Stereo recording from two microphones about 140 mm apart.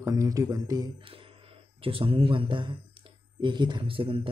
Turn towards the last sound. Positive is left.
turn(degrees=-40)  # may be behind; listen again after turning